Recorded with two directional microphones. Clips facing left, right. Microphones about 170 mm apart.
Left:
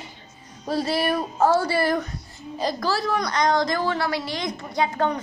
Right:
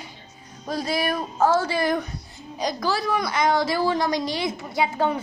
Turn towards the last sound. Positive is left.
turn(degrees=-10)  # may be behind; listen again after turning